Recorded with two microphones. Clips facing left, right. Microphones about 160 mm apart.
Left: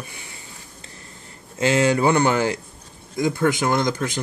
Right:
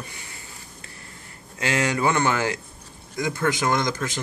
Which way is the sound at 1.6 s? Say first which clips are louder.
Left 5 dB; 20° left (ahead or behind).